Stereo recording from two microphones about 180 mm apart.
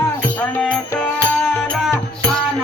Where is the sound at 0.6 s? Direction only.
5° left (ahead or behind).